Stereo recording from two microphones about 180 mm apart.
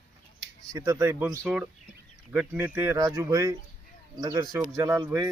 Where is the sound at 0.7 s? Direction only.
15° right (ahead or behind).